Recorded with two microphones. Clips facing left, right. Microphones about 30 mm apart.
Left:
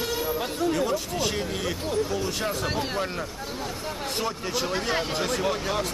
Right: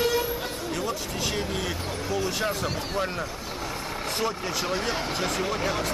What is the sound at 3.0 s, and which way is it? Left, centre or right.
Speech, centre.